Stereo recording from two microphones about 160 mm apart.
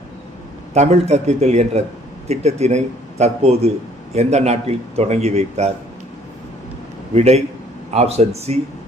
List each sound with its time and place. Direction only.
0.7 s a man's voice: 40° right (ahead or behind)
7.1 s a man's voice: 40° right (ahead or behind)